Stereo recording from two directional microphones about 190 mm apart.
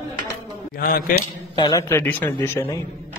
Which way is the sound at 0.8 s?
50° left (ahead or behind).